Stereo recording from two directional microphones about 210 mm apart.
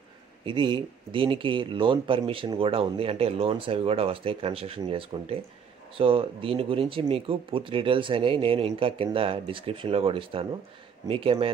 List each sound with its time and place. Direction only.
0.5 s speech: 25° right (ahead or behind)